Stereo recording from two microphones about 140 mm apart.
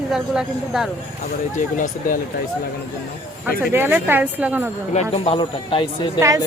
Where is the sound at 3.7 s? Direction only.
15° right (ahead or behind).